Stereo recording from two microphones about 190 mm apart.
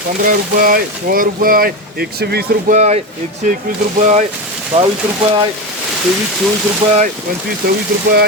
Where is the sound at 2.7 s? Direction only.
35° right (ahead or behind).